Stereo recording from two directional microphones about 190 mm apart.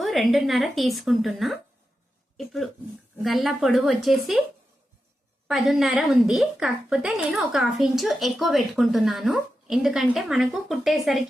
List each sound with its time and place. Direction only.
0.0 s a woman's voice: centre (ahead or behind)
5.5 s a woman's voice: centre (ahead or behind)